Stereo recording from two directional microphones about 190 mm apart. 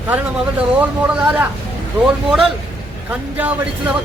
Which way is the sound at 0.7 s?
10° right (ahead or behind).